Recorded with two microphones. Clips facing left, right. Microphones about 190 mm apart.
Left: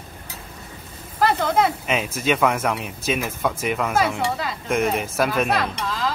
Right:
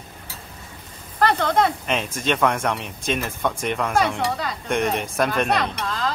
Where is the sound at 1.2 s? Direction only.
5° left (ahead or behind).